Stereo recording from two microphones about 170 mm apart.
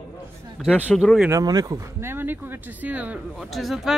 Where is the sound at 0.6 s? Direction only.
Centre (ahead or behind).